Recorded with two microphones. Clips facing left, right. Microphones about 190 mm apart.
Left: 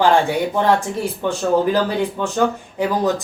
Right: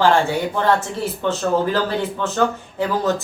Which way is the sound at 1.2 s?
10° left (ahead or behind).